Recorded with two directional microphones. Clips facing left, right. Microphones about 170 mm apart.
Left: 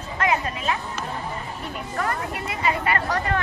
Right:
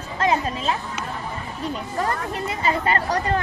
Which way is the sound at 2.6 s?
30° right (ahead or behind).